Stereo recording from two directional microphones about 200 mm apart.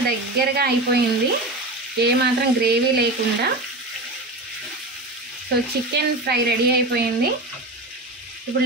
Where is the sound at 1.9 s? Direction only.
55° right (ahead or behind).